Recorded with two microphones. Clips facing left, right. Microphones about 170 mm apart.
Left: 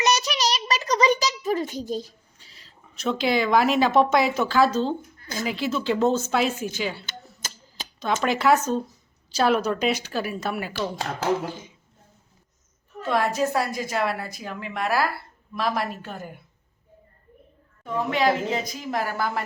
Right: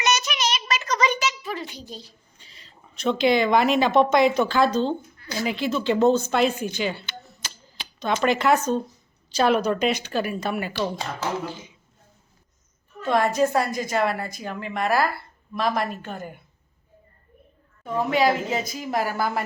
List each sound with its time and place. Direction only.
0.0 s a sound: 35° left (ahead or behind)
2.4 s speech: 5° left (ahead or behind)
5.1 s a sound: 45° left (ahead or behind)
5.5 s a woman's voice: 5° left (ahead or behind)
7.4 s a sound: 45° left (ahead or behind)
8.2 s a woman's voice: 5° left (ahead or behind)
11.4 s speech: 50° left (ahead or behind)
13.0 s a woman's voice: 5° left (ahead or behind)
18.1 s speech: 5° right (ahead or behind)